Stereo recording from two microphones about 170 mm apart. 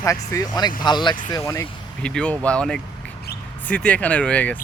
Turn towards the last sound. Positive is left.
turn(degrees=10)  # may be behind; listen again after turning